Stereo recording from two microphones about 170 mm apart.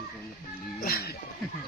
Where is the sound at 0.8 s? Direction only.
60° left (ahead or behind).